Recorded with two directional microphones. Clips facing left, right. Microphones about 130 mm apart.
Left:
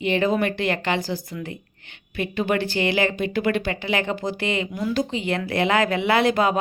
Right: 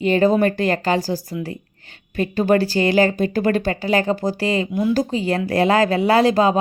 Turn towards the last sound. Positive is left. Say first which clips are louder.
# right 4 dB
turn(degrees=-30)  # may be behind; listen again after turning